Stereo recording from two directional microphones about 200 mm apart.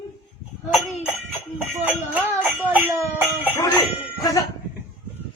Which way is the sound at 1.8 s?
5° right (ahead or behind).